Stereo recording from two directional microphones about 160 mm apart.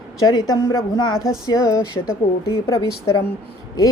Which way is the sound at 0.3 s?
25° left (ahead or behind).